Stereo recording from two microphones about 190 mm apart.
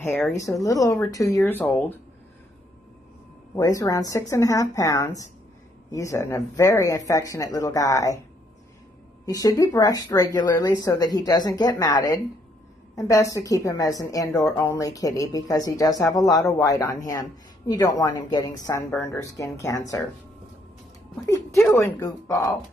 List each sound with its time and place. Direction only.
0.0 s a woman's voice: 10° left (ahead or behind)
3.5 s a woman's voice: 20° left (ahead or behind)
9.2 s a woman's voice: 20° left (ahead or behind)
21.3 s a woman's voice: 15° left (ahead or behind)